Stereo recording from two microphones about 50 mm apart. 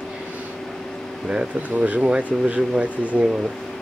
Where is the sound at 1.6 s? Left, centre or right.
Right.